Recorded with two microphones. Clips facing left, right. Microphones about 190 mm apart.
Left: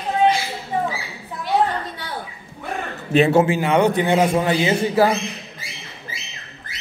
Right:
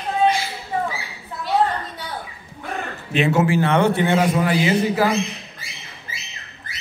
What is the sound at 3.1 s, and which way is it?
Speech, 35° left (ahead or behind).